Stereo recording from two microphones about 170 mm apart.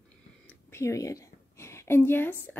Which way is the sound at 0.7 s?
20° left (ahead or behind).